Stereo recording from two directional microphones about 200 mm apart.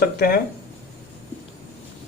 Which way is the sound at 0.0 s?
50° left (ahead or behind).